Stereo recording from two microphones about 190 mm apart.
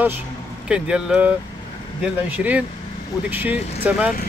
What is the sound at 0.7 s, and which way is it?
Speech, 5° right (ahead or behind).